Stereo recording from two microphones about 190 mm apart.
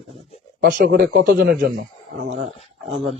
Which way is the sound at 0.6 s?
50° right (ahead or behind).